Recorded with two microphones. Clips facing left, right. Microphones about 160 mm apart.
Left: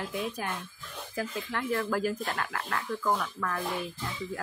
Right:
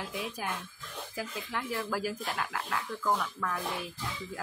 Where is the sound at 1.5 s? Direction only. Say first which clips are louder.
Left 4 dB; 5° right (ahead or behind).